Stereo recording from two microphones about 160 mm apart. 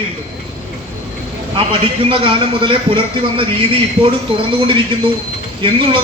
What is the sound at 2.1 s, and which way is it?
Speech, 35° right (ahead or behind).